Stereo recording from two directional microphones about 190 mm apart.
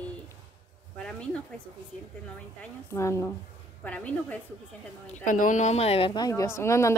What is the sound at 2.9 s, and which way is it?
Speech, 15° left (ahead or behind).